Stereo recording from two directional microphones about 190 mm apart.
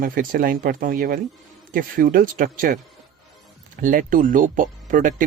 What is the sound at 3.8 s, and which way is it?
Speech, 45° right (ahead or behind).